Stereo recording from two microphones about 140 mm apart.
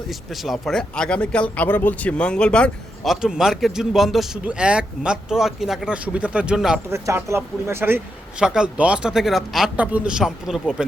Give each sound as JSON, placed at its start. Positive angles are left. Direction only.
{"t": 0.4, "sound": "speech", "side_deg": 0}
{"t": 6.9, "sound": "speech", "side_deg": -20}
{"t": 8.4, "sound": "speech", "side_deg": -5}